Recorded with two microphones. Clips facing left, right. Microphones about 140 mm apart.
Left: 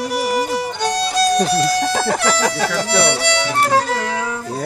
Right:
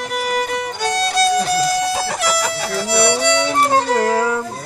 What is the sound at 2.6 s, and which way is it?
Speech, 70° left (ahead or behind).